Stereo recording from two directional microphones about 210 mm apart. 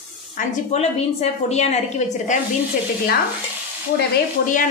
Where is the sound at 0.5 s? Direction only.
30° left (ahead or behind).